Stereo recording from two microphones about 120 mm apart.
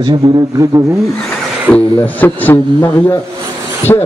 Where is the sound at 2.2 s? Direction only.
20° left (ahead or behind).